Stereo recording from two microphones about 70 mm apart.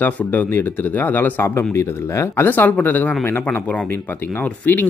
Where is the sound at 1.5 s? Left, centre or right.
Left.